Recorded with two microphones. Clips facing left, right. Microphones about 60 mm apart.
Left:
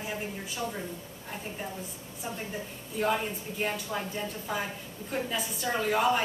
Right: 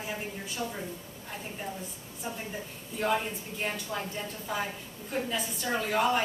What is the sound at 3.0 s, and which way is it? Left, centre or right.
A woman's voice, centre.